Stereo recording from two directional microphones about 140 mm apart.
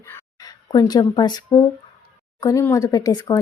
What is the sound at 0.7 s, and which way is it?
Speech, 30° left (ahead or behind).